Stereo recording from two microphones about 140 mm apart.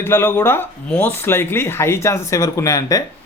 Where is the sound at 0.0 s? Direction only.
15° left (ahead or behind).